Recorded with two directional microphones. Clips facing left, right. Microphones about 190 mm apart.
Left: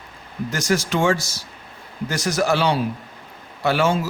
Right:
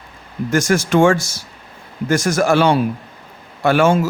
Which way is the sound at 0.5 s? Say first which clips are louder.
Right 7 dB; 50° right (ahead or behind).